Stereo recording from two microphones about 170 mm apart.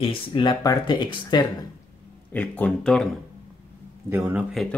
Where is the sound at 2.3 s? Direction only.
10° left (ahead or behind).